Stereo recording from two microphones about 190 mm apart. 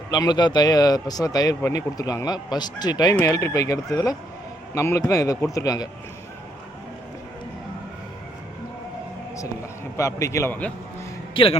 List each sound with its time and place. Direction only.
0.1 s speech: 20° left (ahead or behind)
10.0 s speech: 15° left (ahead or behind)
11.3 s speech: 25° left (ahead or behind)